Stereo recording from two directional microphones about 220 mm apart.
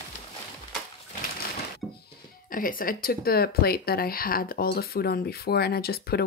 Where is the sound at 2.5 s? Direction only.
40° left (ahead or behind).